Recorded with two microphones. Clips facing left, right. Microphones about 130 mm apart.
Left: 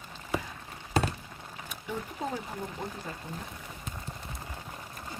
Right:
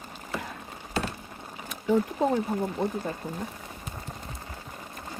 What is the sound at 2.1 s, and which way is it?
Speech, 40° right (ahead or behind).